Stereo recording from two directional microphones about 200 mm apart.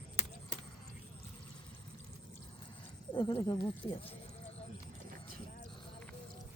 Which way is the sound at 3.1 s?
20° left (ahead or behind).